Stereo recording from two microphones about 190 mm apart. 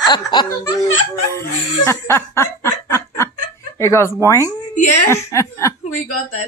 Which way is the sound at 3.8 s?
15° left (ahead or behind).